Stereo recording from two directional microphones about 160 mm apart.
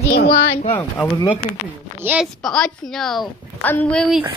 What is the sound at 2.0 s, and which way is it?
Speech, 10° right (ahead or behind).